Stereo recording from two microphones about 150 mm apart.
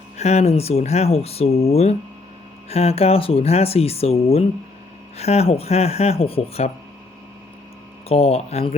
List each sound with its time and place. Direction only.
0.2 s speech: 45° left (ahead or behind)
8.0 s speech: 45° left (ahead or behind)